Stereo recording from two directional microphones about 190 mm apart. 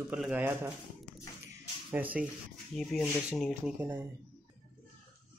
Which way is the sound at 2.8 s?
Centre (ahead or behind).